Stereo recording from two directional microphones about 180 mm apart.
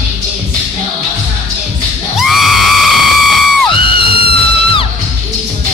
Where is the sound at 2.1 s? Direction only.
Centre (ahead or behind).